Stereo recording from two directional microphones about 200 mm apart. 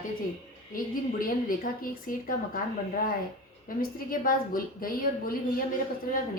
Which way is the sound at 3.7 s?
45° left (ahead or behind).